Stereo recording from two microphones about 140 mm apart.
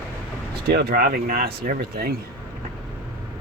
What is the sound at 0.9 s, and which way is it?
Speech, 90° right.